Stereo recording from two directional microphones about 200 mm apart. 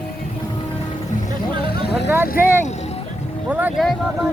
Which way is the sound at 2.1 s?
10° right (ahead or behind).